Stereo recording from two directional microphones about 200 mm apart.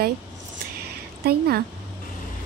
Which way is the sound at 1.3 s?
50° right (ahead or behind).